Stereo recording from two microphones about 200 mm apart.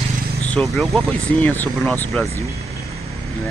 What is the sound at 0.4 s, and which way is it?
Speech, 5° left (ahead or behind).